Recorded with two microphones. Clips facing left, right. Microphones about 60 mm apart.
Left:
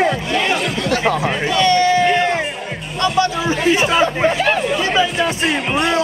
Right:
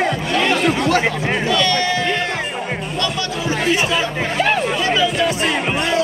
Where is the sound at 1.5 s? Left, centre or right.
Left.